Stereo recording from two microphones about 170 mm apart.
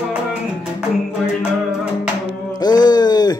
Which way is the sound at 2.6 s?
25° left (ahead or behind).